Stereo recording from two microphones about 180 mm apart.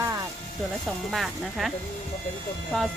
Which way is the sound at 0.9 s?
Centre (ahead or behind).